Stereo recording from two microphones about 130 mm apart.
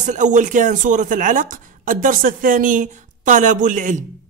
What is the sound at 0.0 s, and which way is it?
Speech, 70° right (ahead or behind).